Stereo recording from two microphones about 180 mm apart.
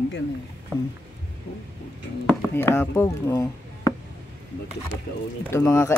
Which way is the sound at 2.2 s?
15° left (ahead or behind).